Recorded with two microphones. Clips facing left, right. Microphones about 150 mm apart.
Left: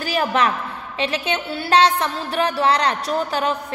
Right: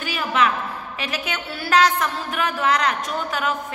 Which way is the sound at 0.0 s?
40° left (ahead or behind).